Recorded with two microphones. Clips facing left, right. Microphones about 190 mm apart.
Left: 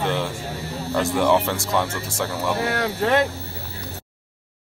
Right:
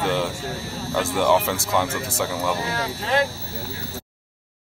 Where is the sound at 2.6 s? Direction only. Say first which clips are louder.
Left 5 dB; 65° left (ahead or behind).